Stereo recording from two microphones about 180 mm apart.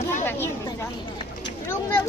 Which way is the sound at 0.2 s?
15° left (ahead or behind).